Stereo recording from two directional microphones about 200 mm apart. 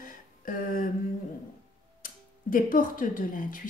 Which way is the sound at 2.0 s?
45° left (ahead or behind).